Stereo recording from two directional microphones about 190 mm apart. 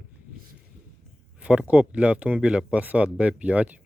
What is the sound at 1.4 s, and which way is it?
Speech, 5° right (ahead or behind).